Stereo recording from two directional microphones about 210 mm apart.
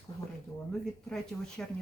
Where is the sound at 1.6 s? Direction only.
5° left (ahead or behind).